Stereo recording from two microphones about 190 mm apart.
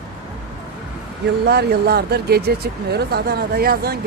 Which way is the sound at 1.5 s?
55° right (ahead or behind).